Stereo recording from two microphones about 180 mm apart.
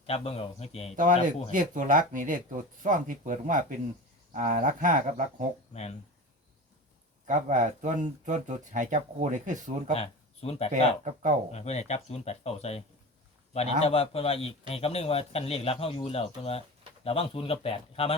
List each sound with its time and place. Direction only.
0.0 s speech: 35° left (ahead or behind)
0.9 s speech: 45° right (ahead or behind)
7.3 s speech: 45° right (ahead or behind)
9.9 s speech: 35° left (ahead or behind)
10.7 s speech: 45° right (ahead or behind)
11.5 s speech: 40° left (ahead or behind)